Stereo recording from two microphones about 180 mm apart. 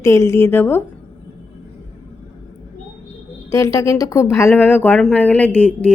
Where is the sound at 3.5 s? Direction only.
15° left (ahead or behind).